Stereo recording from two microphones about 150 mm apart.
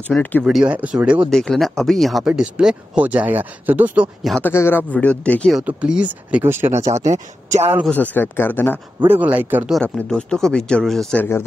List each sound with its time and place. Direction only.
0.1 s speech: 10° left (ahead or behind)
0.4 s speech: 5° right (ahead or behind)
4.4 s speech: 15° left (ahead or behind)
5.6 s speech: 5° right (ahead or behind)
7.9 s speech: 10° left (ahead or behind)
9.0 s speech: 10° right (ahead or behind)
9.7 s speech: centre (ahead or behind)